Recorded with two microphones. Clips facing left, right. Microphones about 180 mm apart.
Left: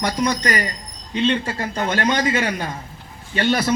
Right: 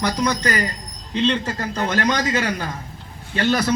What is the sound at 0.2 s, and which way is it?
Speech, 25° left (ahead or behind).